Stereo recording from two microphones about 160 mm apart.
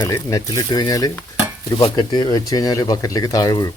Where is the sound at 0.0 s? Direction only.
20° left (ahead or behind).